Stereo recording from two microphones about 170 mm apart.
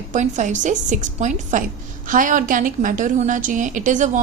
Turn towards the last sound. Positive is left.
turn(degrees=-45)  # may be behind; listen again after turning